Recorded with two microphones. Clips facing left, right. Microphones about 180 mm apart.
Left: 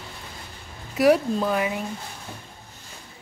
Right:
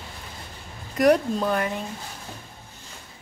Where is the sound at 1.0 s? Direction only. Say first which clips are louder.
Even; 5° left (ahead or behind).